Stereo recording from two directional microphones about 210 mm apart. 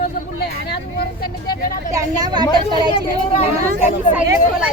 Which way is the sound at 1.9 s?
15° right (ahead or behind).